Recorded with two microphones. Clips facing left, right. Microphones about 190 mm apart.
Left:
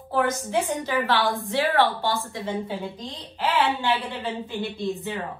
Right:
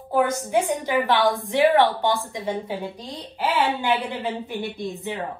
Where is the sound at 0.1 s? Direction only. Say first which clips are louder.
Right 3 dB; 10° right (ahead or behind).